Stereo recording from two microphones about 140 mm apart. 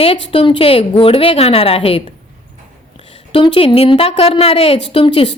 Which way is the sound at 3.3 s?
40° left (ahead or behind).